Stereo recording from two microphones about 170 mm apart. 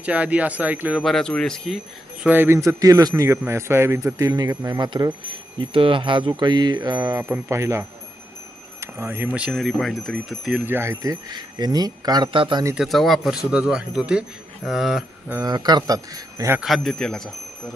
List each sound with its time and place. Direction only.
0.0 s speech: 10° right (ahead or behind)
2.2 s speech: 10° right (ahead or behind)
5.5 s jingle bell: 30° right (ahead or behind)
7.0 s speech: 15° right (ahead or behind); by 12.6 s 30° right (ahead or behind)
12.7 s speech: centre (ahead or behind)
15.3 s jingle bell: 20° right (ahead or behind)
16.6 s speech: centre (ahead or behind)